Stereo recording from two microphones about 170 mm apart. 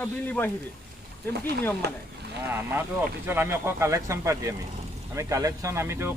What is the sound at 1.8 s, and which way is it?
Speech, 70° right (ahead or behind).